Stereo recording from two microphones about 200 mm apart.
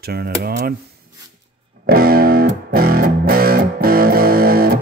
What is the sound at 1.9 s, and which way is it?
Music, 50° right (ahead or behind).